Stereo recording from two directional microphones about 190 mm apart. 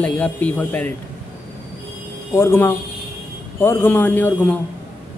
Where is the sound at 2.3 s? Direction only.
15° left (ahead or behind).